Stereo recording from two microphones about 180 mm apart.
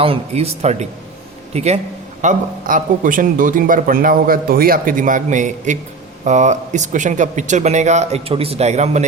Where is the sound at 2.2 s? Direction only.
50° right (ahead or behind).